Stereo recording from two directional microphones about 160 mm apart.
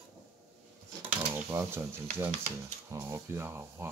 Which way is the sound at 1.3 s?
15° right (ahead or behind).